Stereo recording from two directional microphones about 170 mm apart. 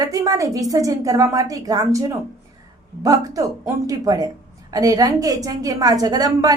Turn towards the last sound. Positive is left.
turn(degrees=-20)  # may be behind; listen again after turning